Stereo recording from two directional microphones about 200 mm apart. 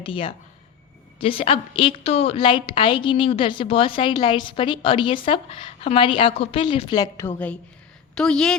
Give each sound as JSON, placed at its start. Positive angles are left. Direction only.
{"t": 0.0, "sound": "a woman's voice", "side_deg": 25}